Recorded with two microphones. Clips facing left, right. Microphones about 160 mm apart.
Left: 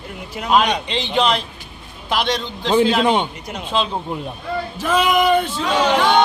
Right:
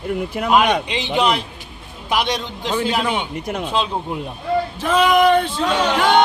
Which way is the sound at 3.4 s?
50° right (ahead or behind).